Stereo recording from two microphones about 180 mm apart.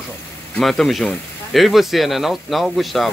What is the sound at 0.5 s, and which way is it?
Speech, centre (ahead or behind).